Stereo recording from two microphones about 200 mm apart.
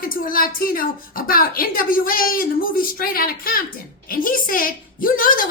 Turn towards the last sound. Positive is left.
turn(degrees=45)  # may be behind; listen again after turning